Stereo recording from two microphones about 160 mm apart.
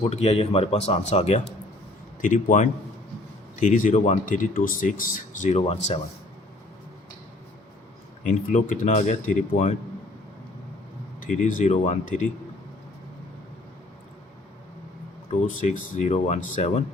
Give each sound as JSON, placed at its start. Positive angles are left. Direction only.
{"t": 0.0, "sound": "speech", "side_deg": 40}
{"t": 2.2, "sound": "a man's voice", "side_deg": 55}
{"t": 8.2, "sound": "speech", "side_deg": 50}
{"t": 11.2, "sound": "speech", "side_deg": 55}
{"t": 15.4, "sound": "speech", "side_deg": 45}